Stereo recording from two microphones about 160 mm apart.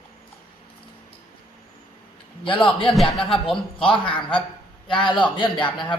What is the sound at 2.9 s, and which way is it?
Speech, centre (ahead or behind).